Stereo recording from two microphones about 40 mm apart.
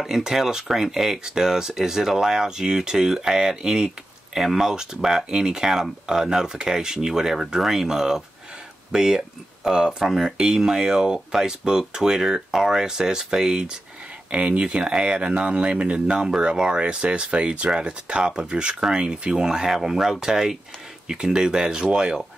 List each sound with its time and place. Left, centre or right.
0.0 s speech: centre
14.3 s speech: right